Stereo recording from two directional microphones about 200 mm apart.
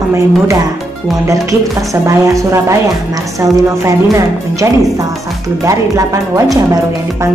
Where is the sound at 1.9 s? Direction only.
15° right (ahead or behind).